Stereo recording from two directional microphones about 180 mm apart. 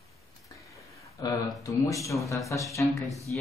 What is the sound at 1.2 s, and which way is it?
Speech, 20° left (ahead or behind).